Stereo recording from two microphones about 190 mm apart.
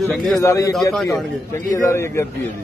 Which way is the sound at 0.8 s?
Centre (ahead or behind).